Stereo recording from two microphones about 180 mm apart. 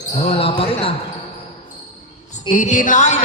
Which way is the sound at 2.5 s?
45° left (ahead or behind).